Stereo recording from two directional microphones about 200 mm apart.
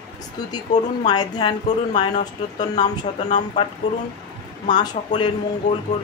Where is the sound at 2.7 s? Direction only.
35° left (ahead or behind).